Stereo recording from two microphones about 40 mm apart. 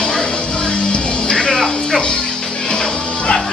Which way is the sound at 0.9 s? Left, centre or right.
Left.